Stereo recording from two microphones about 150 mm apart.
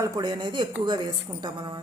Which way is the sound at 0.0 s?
30° right (ahead or behind).